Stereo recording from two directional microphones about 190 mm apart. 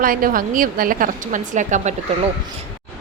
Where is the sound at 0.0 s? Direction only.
50° right (ahead or behind).